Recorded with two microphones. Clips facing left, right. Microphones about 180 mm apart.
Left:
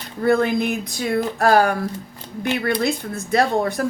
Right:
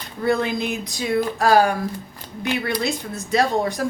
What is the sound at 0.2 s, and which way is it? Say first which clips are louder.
Speech: left 3 dB; 50° left (ahead or behind).